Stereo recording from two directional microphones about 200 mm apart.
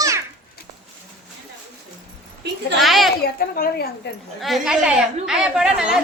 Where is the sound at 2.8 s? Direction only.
Centre (ahead or behind).